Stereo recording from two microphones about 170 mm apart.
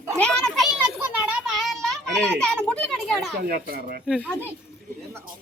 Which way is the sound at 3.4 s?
60° right (ahead or behind).